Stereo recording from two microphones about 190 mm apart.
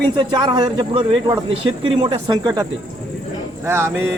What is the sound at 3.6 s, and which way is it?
Speech, 15° right (ahead or behind).